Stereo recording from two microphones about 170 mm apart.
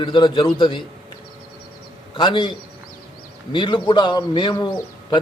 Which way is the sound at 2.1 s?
30° left (ahead or behind).